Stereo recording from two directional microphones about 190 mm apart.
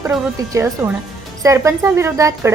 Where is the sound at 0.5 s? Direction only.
10° right (ahead or behind).